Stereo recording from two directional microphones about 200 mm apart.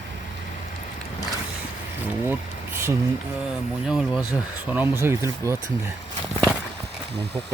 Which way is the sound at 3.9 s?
Centre (ahead or behind).